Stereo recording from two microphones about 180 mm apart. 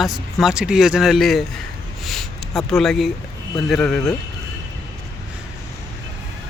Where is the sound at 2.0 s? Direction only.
Centre (ahead or behind).